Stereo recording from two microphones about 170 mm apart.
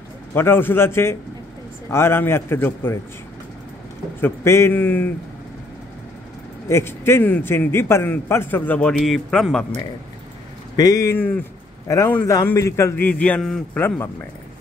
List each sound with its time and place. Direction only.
0.3 s a man's voice: 15° left (ahead or behind)
4.2 s a man's voice: 15° left (ahead or behind)
6.7 s a man's voice: 15° left (ahead or behind)
10.8 s a man's voice: 20° left (ahead or behind)